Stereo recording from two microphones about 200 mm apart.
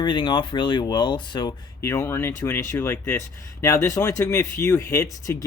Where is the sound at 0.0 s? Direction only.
20° left (ahead or behind).